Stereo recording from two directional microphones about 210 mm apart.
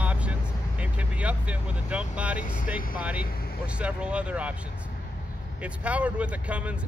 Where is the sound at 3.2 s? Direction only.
45° left (ahead or behind).